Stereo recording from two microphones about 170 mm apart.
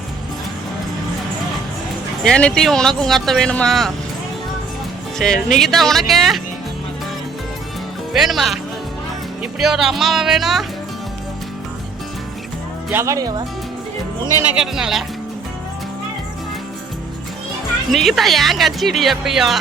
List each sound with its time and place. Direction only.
2.2 s speech: 5° left (ahead or behind)
5.1 s speech: 5° left (ahead or behind)
8.1 s speech: centre (ahead or behind)
12.9 s speech: 15° right (ahead or behind)
14.3 s speech: 10° right (ahead or behind)
17.9 s speech: centre (ahead or behind)